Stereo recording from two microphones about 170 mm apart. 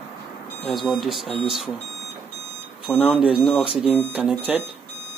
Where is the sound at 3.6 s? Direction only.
30° left (ahead or behind).